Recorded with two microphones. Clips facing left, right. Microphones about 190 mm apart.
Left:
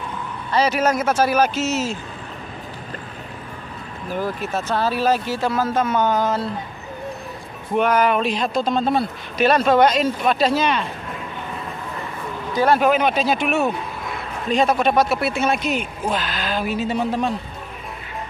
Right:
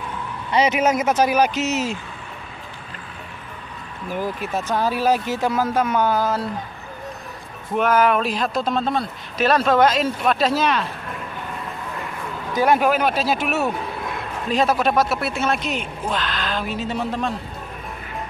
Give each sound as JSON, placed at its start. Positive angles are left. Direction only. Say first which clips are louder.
{"t": 0.5, "sound": "a man's voice", "louder": "even", "side_deg": -20}
{"t": 4.1, "sound": "speech", "louder": "left 1 dB", "side_deg": -15}
{"t": 7.7, "sound": "speech", "louder": "even", "side_deg": 0}
{"t": 12.5, "sound": "speech", "louder": "left 1 dB", "side_deg": -15}